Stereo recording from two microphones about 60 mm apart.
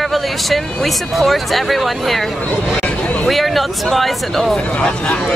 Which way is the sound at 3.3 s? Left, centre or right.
Centre.